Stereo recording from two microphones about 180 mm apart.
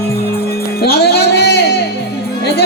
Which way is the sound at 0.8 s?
60° left (ahead or behind).